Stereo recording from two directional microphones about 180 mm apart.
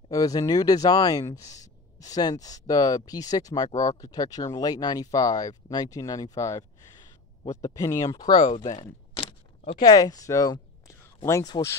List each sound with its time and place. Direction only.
0.1 s speech: 20° left (ahead or behind)
8.4 s speech: 35° left (ahead or behind)
9.8 s speech: 20° left (ahead or behind)